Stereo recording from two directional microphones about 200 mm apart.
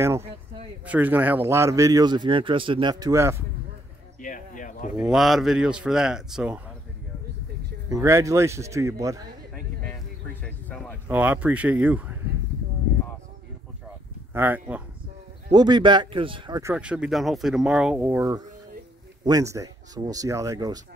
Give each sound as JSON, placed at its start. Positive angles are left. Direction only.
{"t": 0.8, "sound": "speech", "side_deg": -10}
{"t": 4.2, "sound": "a sound", "side_deg": 40}
{"t": 4.9, "sound": "speech", "side_deg": -5}
{"t": 7.9, "sound": "speech", "side_deg": -15}
{"t": 10.4, "sound": "music", "side_deg": 5}
{"t": 11.1, "sound": "speech", "side_deg": -5}
{"t": 14.3, "sound": "speech", "side_deg": -10}
{"t": 15.5, "sound": "speech", "side_deg": -20}
{"t": 16.7, "sound": "speech", "side_deg": -5}